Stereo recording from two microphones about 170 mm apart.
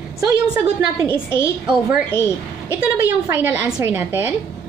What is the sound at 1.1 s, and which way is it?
A woman's voice, 15° left (ahead or behind).